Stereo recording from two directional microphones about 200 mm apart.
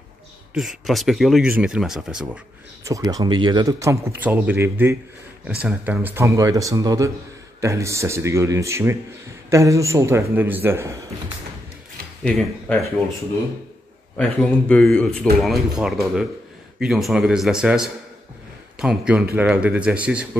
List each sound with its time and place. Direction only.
0.6 s speech: centre (ahead or behind)
2.8 s speech: 15° right (ahead or behind)
12.2 s speech: centre (ahead or behind)
14.1 s speech: 5° left (ahead or behind)